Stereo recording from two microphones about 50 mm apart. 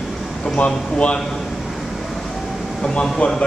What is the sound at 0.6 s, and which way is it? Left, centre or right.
Speech, left.